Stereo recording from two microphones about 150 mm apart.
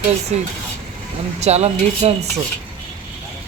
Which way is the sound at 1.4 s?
45° right (ahead or behind).